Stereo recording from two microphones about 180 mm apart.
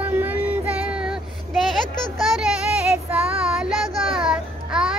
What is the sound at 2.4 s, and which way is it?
Child singing, 5° right (ahead or behind).